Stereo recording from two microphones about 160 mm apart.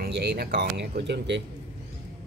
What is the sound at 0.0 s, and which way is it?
Speech, 90° right.